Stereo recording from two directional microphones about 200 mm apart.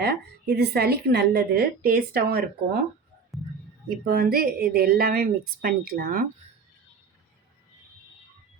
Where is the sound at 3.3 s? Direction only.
Centre (ahead or behind).